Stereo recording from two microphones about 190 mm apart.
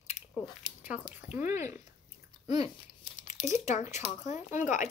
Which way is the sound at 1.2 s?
10° right (ahead or behind).